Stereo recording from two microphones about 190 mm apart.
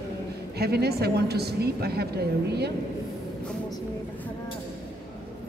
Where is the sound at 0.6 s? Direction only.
55° right (ahead or behind).